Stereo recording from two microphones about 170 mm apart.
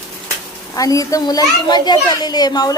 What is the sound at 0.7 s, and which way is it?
A child's voice, 20° left (ahead or behind).